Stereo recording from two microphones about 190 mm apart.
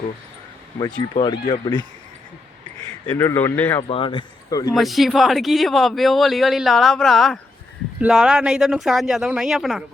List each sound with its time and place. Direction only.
0.8 s speech: 25° left (ahead or behind)
3.1 s speech: 15° left (ahead or behind)
3.8 s speech: 30° left (ahead or behind)
4.7 s speech: centre (ahead or behind)